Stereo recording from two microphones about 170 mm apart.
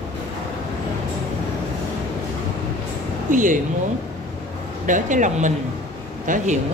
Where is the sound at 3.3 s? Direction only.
50° right (ahead or behind).